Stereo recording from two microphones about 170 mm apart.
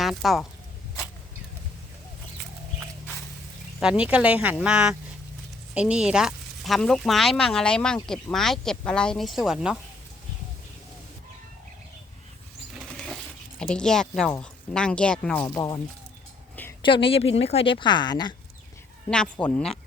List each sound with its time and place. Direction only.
0.0 s speech: centre (ahead or behind)
3.8 s speech: 5° right (ahead or behind)
12.7 s speech: 5° left (ahead or behind)
15.4 s a woman's voice: 20° left (ahead or behind)
16.8 s a woman's voice: 30° left (ahead or behind)
19.1 s speech: 5° left (ahead or behind)